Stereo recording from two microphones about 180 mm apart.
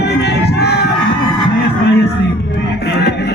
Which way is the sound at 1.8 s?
70° left (ahead or behind).